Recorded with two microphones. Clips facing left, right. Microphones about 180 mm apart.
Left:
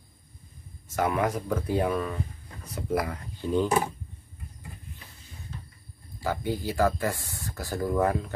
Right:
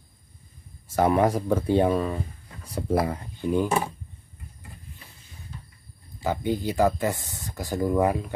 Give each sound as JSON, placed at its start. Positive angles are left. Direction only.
{"t": 0.8, "sound": "speech", "side_deg": -30}
{"t": 3.3, "sound": "speech", "side_deg": -15}
{"t": 6.2, "sound": "speech", "side_deg": -20}